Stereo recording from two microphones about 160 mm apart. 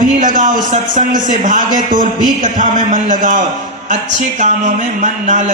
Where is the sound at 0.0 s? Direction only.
55° right (ahead or behind).